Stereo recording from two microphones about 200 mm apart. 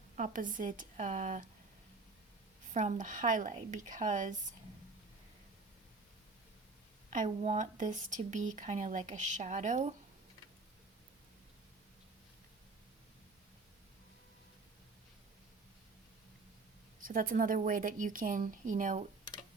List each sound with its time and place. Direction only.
0.2 s speech: 40° right (ahead or behind)
2.7 s speech: 35° right (ahead or behind)
7.1 s speech: 35° right (ahead or behind)
17.1 s speech: 40° right (ahead or behind)